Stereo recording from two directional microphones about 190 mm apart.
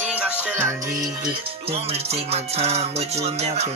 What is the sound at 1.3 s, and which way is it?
Music, 30° right (ahead or behind).